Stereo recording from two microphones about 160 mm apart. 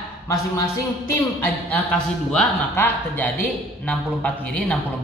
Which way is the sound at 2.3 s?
10° left (ahead or behind).